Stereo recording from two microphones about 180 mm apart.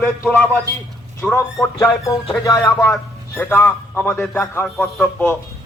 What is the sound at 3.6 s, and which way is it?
Speech, 10° left (ahead or behind).